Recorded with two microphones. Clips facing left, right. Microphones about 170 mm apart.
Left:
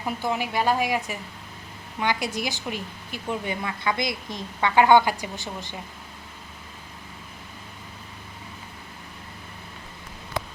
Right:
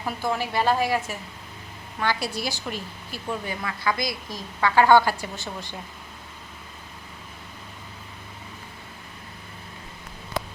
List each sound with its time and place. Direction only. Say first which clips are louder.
0.2 s a woman's voice: right 2 dB; 15° left (ahead or behind)